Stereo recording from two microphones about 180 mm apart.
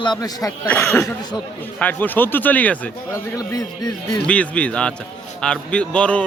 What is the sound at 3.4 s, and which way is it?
Speech, 20° left (ahead or behind).